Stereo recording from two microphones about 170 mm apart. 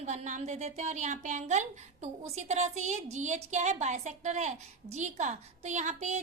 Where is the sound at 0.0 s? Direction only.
45° right (ahead or behind).